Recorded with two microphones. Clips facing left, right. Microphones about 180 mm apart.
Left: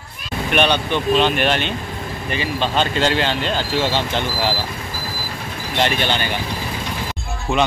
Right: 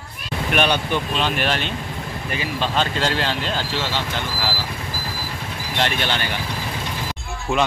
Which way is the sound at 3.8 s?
20° left (ahead or behind).